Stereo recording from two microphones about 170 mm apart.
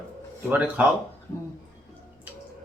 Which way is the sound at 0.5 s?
10° right (ahead or behind).